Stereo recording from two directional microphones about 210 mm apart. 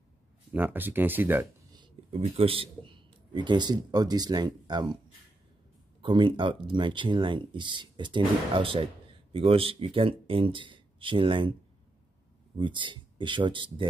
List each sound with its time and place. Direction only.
0.5 s speech: 10° right (ahead or behind)
6.0 s speech: 20° right (ahead or behind)
12.5 s speech: 20° right (ahead or behind)